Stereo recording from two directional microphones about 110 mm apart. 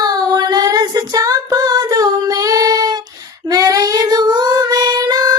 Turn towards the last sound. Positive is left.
turn(degrees=-35)  # may be behind; listen again after turning